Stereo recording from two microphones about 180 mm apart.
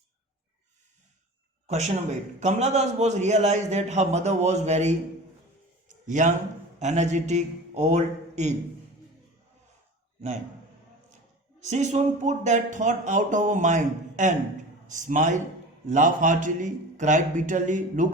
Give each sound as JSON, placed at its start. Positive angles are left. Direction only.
{"t": 1.6, "sound": "a man's voice", "side_deg": -40}
{"t": 6.1, "sound": "speech", "side_deg": -45}
{"t": 11.6, "sound": "speech", "side_deg": -40}